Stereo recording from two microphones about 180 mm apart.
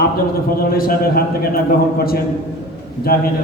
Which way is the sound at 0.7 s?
55° left (ahead or behind).